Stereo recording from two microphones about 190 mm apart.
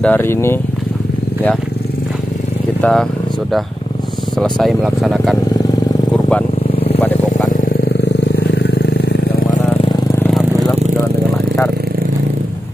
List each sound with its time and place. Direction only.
0.0 s speech: 10° left (ahead or behind)
2.8 s speech: 5° left (ahead or behind)
4.4 s speech: centre (ahead or behind)
7.0 s vehicle: 10° left (ahead or behind)
8.0 s vehicle: 60° left (ahead or behind)